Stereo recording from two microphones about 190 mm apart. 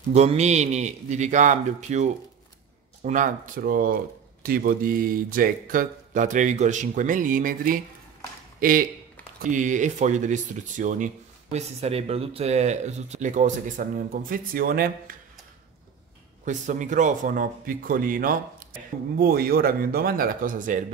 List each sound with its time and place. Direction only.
0.1 s speech: 35° right (ahead or behind); by 15.1 s 50° right (ahead or behind)
16.4 s speech: 40° right (ahead or behind)